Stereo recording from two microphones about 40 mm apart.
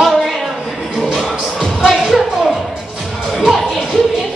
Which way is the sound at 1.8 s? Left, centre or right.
Centre.